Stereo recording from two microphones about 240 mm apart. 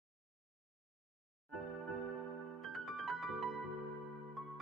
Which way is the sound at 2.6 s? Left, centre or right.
Centre.